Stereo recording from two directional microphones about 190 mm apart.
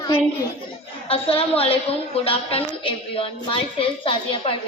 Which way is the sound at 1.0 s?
30° left (ahead or behind).